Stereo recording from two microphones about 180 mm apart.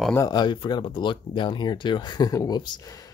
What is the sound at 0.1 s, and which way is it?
Speech, 20° left (ahead or behind).